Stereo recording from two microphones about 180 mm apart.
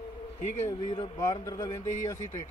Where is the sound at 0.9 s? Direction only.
25° left (ahead or behind).